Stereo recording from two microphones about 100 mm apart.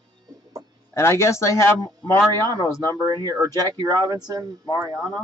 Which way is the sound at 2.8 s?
40° right (ahead or behind).